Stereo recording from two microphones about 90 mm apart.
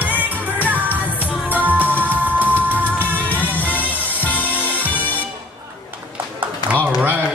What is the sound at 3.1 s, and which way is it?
Music, 20° left (ahead or behind).